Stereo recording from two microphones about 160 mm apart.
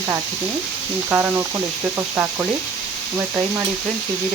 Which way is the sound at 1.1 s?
15° right (ahead or behind).